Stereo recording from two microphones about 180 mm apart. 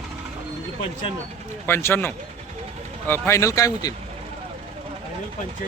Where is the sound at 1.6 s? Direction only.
15° left (ahead or behind).